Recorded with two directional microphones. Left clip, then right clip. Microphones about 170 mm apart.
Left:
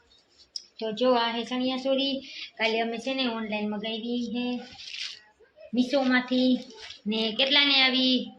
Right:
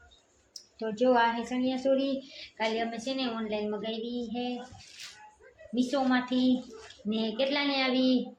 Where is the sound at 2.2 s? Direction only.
25° left (ahead or behind).